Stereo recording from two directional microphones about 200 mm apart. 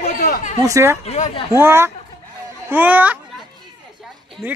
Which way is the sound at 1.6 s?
10° right (ahead or behind).